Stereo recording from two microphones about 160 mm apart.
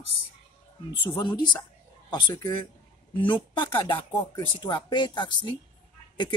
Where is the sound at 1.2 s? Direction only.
30° left (ahead or behind).